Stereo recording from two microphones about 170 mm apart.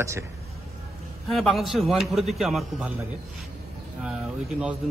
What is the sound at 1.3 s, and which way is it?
Speech, centre (ahead or behind).